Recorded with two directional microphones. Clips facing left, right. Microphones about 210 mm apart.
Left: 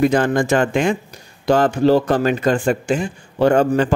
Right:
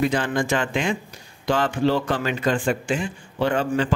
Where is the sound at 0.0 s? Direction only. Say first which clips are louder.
Left 6 dB; 45° left (ahead or behind).